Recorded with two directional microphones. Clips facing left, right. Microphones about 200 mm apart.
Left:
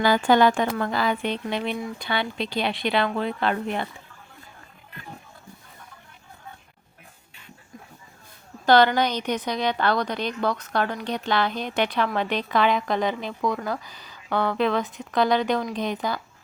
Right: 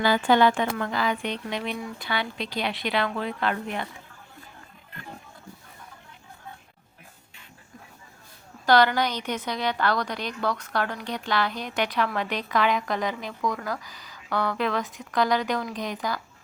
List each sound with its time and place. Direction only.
0.0 s speech: 40° left (ahead or behind)
8.6 s speech: 25° left (ahead or behind)